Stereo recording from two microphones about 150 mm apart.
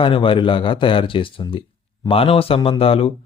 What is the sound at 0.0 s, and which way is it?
Speech, 35° left (ahead or behind).